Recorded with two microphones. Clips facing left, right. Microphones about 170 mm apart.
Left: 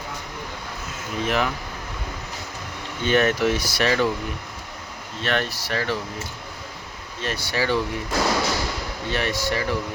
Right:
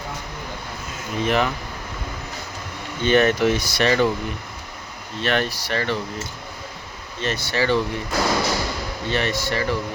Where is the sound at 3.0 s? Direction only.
5° left (ahead or behind).